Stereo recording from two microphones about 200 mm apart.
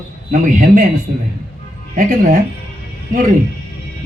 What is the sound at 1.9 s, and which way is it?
Speech, 45° right (ahead or behind).